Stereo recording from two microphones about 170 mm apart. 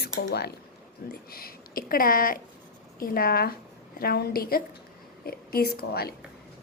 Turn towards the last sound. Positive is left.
turn(degrees=65)  # may be behind; listen again after turning